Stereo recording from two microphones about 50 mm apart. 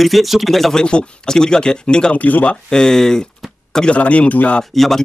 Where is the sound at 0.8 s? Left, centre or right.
Centre.